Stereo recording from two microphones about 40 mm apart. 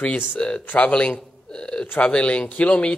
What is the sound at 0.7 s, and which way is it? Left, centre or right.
Speech, left.